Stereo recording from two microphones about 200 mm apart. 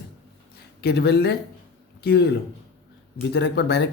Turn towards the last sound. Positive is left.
turn(degrees=60)  # may be behind; listen again after turning